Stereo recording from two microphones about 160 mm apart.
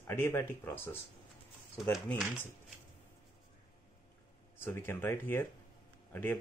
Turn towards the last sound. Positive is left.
turn(degrees=15)  # may be behind; listen again after turning